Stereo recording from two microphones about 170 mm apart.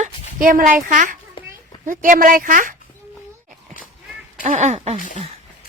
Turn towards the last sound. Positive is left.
turn(degrees=-40)  # may be behind; listen again after turning